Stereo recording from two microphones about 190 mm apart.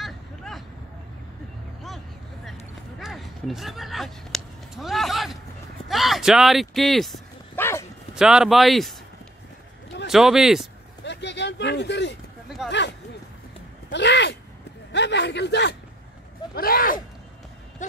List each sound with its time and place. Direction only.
0.0 s vehicle: centre (ahead or behind)
3.0 s a sound: centre (ahead or behind)
5.9 s speech: centre (ahead or behind)
7.5 s dog: 10° left (ahead or behind)
8.1 s speech: 5° right (ahead or behind)
10.0 s speech: centre (ahead or behind)
11.1 s a sound: 65° left (ahead or behind)
12.6 s a sound: 5° right (ahead or behind)
13.9 s a man's voice: 65° left (ahead or behind)
16.5 s speech: 50° left (ahead or behind)